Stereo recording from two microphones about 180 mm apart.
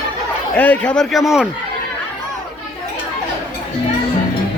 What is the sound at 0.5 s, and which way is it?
Speech, 10° left (ahead or behind).